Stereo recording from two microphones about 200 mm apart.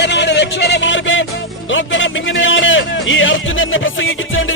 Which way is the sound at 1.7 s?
70° left (ahead or behind).